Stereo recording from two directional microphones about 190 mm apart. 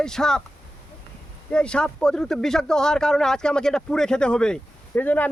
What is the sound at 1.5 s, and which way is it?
Speech, 5° left (ahead or behind).